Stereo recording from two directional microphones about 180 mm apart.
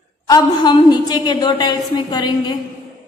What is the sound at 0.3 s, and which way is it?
A woman's voice, 20° left (ahead or behind).